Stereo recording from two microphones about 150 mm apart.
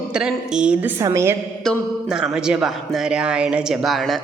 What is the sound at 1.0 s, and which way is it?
Speech, 20° right (ahead or behind).